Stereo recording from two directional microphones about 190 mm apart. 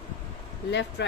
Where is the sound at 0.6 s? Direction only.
65° left (ahead or behind).